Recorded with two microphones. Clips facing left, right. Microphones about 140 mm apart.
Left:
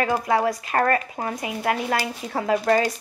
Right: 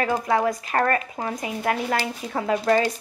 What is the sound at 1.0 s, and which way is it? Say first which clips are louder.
Speech: even; 40° left (ahead or behind).